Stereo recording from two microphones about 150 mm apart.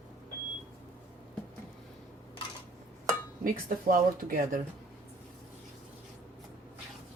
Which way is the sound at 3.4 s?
65° right (ahead or behind).